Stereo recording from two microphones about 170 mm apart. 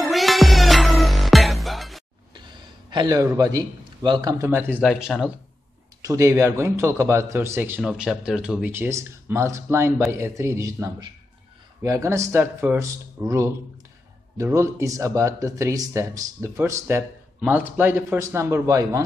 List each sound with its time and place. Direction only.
0.0 s music: centre (ahead or behind)
2.3 s a man's voice: 25° right (ahead or behind)
4.8 s speech: centre (ahead or behind)
6.0 s a man's voice: 20° right (ahead or behind)